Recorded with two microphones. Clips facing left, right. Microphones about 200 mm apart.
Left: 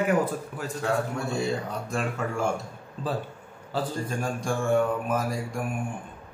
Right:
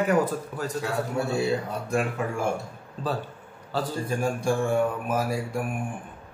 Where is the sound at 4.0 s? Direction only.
10° right (ahead or behind).